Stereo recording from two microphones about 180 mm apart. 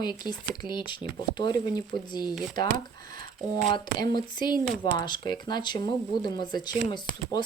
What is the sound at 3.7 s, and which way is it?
Speech, 25° left (ahead or behind).